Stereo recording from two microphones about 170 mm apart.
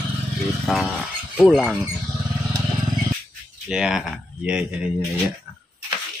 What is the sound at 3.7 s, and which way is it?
Speech, 5° right (ahead or behind).